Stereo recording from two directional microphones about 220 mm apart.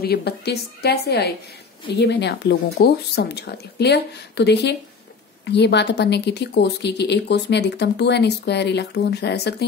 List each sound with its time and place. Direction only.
0.0 s speech: 45° left (ahead or behind)